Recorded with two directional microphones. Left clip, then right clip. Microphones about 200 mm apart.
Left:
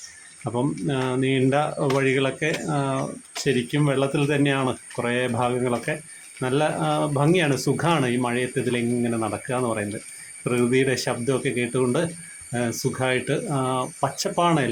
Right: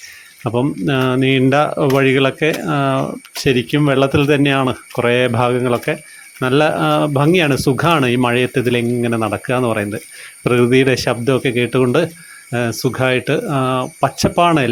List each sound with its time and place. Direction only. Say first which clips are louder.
0.5 s speech: right 8 dB; 40° right (ahead or behind)